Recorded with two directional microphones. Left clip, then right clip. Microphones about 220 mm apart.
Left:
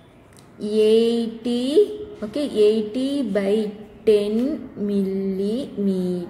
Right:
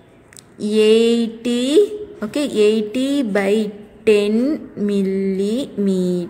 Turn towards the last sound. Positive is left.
turn(degrees=-30)  # may be behind; listen again after turning